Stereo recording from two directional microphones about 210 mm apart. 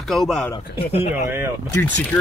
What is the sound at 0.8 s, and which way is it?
Music, 30° left (ahead or behind).